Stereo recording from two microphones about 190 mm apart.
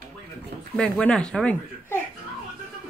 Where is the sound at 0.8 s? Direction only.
5° left (ahead or behind).